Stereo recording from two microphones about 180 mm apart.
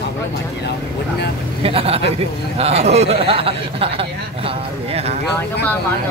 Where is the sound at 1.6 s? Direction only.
30° right (ahead or behind).